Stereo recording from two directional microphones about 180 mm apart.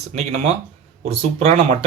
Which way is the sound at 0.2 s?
35° right (ahead or behind).